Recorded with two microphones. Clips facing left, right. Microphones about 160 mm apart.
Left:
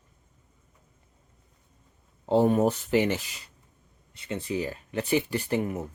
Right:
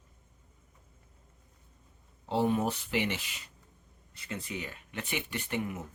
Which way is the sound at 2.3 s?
45° left (ahead or behind).